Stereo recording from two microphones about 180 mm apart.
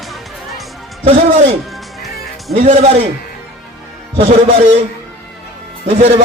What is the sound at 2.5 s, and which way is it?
Speech, 35° right (ahead or behind).